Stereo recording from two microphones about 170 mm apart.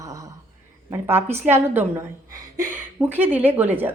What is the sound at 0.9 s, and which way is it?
Speech, 15° right (ahead or behind).